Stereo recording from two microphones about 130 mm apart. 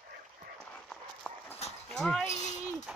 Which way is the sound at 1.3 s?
5° left (ahead or behind).